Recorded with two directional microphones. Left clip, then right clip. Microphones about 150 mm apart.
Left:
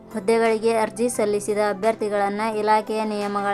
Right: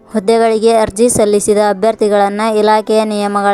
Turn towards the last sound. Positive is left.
turn(degrees=-40)  # may be behind; listen again after turning